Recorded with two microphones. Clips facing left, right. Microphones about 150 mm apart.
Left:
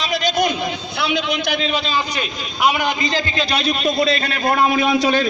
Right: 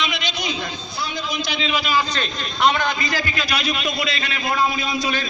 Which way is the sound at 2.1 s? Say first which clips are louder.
Left 1 dB; 10° left (ahead or behind).